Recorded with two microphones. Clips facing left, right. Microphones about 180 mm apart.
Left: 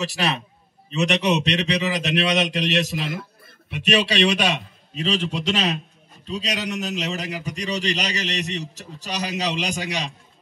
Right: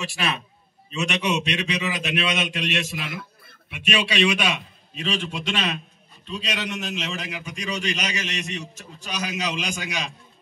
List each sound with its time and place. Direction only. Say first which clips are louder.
0.0 s a man's voice: left 3 dB; 35° left (ahead or behind)